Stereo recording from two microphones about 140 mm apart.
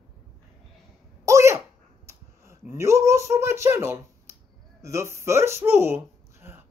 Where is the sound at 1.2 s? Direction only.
20° right (ahead or behind).